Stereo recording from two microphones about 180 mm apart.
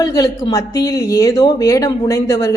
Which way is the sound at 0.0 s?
20° left (ahead or behind).